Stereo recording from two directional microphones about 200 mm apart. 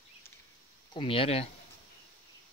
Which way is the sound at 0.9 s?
25° left (ahead or behind).